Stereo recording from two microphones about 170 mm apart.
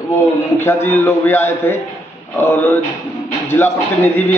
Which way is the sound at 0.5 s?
15° left (ahead or behind).